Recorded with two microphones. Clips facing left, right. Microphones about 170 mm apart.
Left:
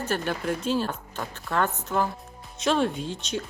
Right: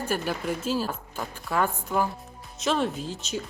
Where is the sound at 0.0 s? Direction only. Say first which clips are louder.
Left 1 dB; 5° right (ahead or behind).